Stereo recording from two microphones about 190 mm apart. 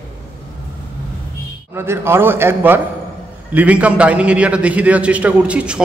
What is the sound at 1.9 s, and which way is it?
A man's voice, 10° right (ahead or behind).